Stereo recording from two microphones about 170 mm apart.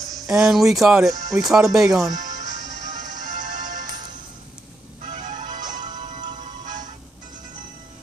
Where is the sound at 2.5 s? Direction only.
25° right (ahead or behind).